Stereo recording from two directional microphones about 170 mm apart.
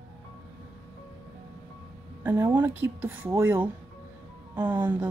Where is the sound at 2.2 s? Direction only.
15° right (ahead or behind).